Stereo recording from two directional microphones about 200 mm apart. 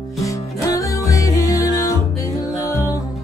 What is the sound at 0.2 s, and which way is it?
Music, 15° left (ahead or behind).